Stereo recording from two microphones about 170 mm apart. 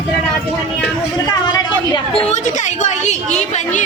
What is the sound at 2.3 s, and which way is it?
A woman's voice, 45° left (ahead or behind).